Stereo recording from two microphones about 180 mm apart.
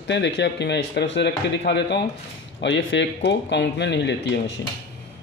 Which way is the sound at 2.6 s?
80° left.